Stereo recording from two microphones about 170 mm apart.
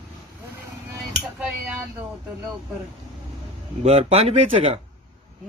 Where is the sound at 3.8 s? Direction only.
40° right (ahead or behind).